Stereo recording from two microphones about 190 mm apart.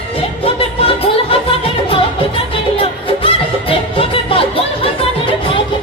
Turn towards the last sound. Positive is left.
turn(degrees=30)  # may be behind; listen again after turning